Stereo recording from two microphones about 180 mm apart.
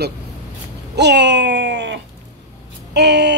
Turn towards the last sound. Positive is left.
turn(degrees=-70)  # may be behind; listen again after turning